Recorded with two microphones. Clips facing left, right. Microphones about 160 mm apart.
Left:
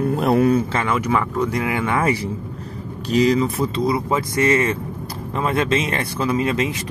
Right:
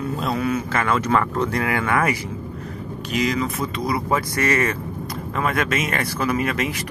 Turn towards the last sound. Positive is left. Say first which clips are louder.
# left 3 dB
turn(degrees=25)  # may be behind; listen again after turning